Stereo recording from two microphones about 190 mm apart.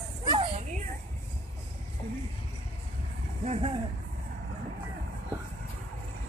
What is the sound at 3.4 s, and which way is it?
Speech, 30° right (ahead or behind).